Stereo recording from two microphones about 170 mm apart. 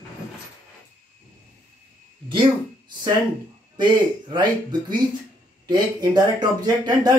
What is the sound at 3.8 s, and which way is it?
Speech, 25° right (ahead or behind).